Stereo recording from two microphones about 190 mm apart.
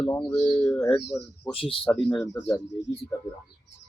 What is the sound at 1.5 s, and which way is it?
Speech, 30° left (ahead or behind).